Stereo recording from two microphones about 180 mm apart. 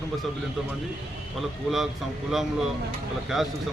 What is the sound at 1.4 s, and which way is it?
A man's voice, centre (ahead or behind).